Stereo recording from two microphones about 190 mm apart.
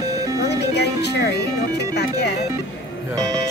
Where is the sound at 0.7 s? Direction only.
60° left (ahead or behind).